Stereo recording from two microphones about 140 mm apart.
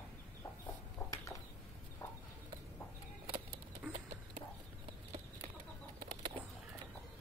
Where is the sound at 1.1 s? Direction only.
25° left (ahead or behind).